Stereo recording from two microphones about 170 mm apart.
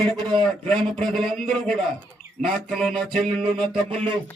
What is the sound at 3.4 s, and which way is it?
Music, 30° right (ahead or behind).